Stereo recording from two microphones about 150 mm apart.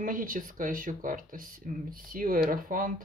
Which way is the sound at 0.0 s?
65° right (ahead or behind).